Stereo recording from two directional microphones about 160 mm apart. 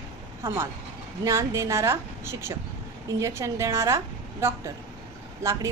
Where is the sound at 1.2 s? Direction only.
20° right (ahead or behind).